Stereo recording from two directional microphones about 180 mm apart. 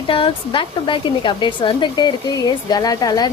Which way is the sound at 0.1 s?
30° left (ahead or behind).